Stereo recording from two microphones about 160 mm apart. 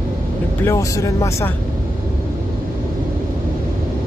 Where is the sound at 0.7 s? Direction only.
20° left (ahead or behind).